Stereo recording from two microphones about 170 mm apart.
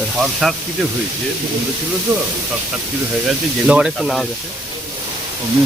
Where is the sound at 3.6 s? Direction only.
5° right (ahead or behind).